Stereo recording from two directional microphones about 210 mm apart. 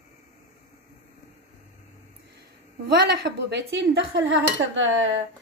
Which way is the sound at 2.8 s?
50° right (ahead or behind).